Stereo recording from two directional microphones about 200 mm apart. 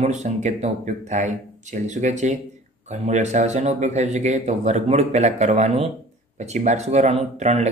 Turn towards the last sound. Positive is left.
turn(degrees=-35)  # may be behind; listen again after turning